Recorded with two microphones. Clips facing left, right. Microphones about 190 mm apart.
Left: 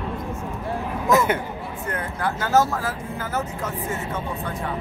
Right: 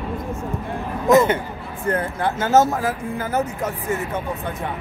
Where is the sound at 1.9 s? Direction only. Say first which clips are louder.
Right 6 dB; 30° right (ahead or behind).